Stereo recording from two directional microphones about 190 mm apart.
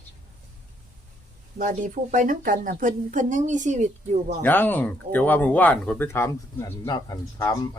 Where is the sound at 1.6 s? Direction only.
45° right (ahead or behind).